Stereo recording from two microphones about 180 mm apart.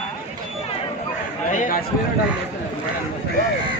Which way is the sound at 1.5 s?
45° left (ahead or behind).